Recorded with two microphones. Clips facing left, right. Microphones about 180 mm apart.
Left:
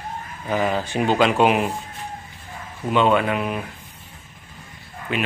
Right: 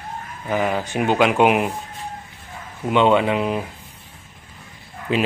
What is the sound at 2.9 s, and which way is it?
Speech, 20° right (ahead or behind).